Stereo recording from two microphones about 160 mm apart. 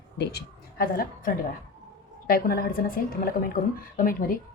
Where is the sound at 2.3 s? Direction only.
70° left (ahead or behind).